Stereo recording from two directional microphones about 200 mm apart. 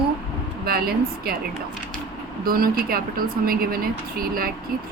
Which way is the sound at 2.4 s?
45° right (ahead or behind).